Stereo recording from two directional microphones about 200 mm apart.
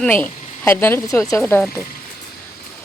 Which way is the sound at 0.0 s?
10° left (ahead or behind).